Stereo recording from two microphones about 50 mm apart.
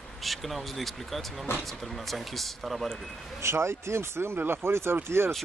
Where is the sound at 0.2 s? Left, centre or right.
Centre.